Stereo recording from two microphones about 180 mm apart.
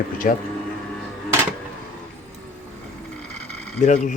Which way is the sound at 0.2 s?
50° left (ahead or behind).